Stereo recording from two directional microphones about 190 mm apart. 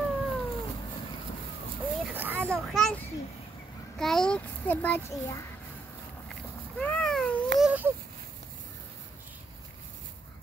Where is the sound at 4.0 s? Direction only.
Centre (ahead or behind).